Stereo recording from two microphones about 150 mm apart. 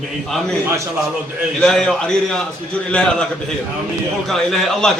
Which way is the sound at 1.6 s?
5° left (ahead or behind).